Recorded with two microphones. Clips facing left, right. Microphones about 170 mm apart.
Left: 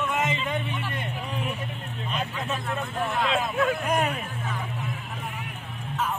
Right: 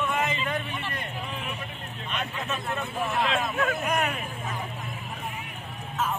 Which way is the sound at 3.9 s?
30° left (ahead or behind).